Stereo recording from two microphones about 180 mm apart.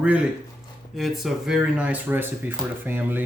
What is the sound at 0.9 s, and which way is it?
A child's voice, centre (ahead or behind).